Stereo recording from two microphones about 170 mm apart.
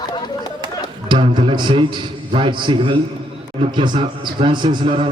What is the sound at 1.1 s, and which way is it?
Music, 30° right (ahead or behind).